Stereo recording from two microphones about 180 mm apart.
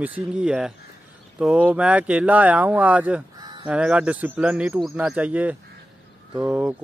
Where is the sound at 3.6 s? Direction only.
5° right (ahead or behind).